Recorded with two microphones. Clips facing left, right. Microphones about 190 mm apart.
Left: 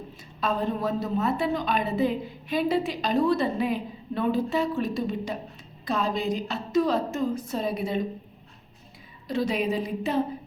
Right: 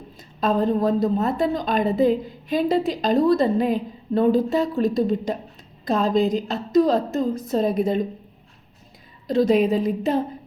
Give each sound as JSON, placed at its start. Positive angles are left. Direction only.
{"t": 0.2, "sound": "a woman's voice", "side_deg": -40}
{"t": 9.2, "sound": "a woman's voice", "side_deg": -40}